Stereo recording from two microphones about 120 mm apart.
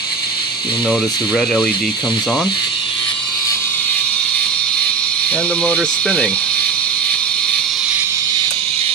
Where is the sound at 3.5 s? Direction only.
20° left (ahead or behind); by 7.8 s 5° left (ahead or behind).